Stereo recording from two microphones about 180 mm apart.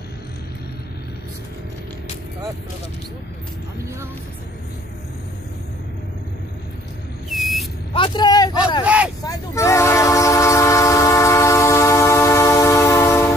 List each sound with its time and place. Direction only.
7.2 s a sound: centre (ahead or behind)
7.9 s speech: 30° left (ahead or behind)
8.8 s speech: 5° right (ahead or behind)
9.2 s train: 20° left (ahead or behind)